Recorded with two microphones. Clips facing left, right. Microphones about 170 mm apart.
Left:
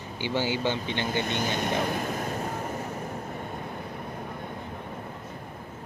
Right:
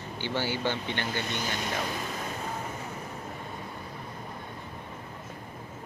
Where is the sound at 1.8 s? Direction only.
50° left (ahead or behind).